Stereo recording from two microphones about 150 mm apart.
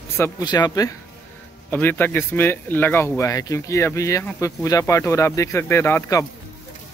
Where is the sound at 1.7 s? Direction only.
15° left (ahead or behind).